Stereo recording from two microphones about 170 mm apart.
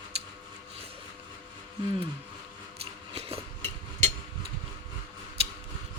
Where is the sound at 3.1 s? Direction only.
35° right (ahead or behind).